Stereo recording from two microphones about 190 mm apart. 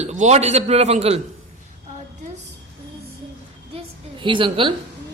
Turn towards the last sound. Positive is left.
turn(degrees=-25)  # may be behind; listen again after turning